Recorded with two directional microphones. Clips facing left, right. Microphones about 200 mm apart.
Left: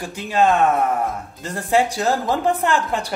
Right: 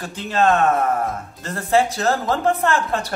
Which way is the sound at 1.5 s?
15° left (ahead or behind).